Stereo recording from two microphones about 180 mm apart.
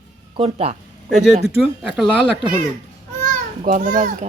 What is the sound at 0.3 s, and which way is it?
Speech, 35° right (ahead or behind).